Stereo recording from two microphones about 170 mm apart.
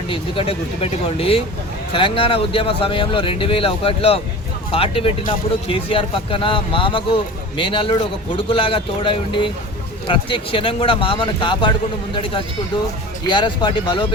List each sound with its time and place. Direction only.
0.1 s speech: 35° left (ahead or behind)